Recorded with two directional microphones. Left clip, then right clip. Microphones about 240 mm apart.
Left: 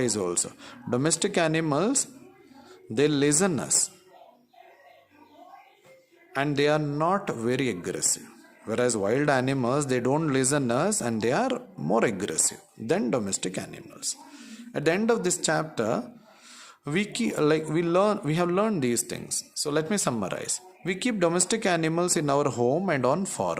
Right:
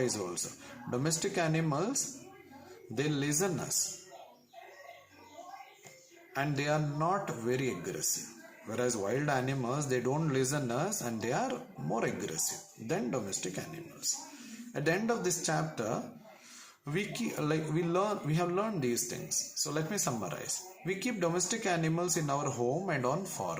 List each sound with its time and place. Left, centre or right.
0.0 s speech: left
6.3 s speech: left